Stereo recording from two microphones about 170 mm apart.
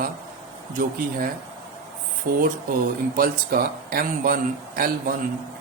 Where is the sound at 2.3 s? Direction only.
55° right (ahead or behind).